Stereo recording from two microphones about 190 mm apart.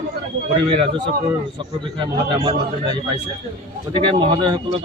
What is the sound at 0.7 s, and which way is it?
Speech, 25° right (ahead or behind).